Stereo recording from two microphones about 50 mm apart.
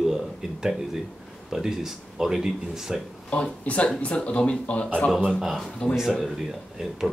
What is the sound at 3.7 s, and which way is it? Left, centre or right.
Speech, left.